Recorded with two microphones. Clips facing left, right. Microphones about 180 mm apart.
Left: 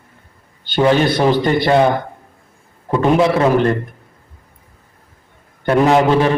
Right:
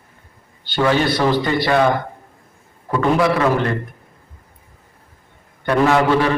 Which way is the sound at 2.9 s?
20° left (ahead or behind).